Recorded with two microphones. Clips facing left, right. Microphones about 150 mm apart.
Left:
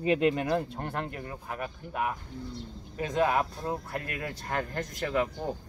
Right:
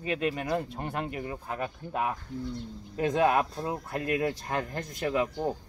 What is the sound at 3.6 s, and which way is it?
Speech, 20° right (ahead or behind).